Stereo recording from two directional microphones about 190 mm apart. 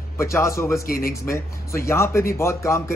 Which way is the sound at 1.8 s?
15° left (ahead or behind).